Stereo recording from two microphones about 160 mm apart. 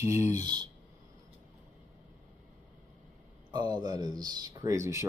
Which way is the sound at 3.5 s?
25° right (ahead or behind).